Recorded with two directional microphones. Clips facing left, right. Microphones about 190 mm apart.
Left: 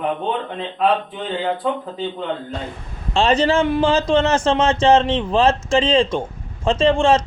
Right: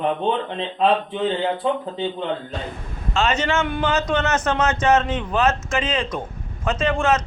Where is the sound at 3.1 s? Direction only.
35° left (ahead or behind).